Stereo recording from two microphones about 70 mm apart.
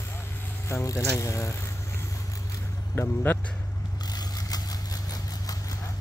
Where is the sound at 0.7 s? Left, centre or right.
Left.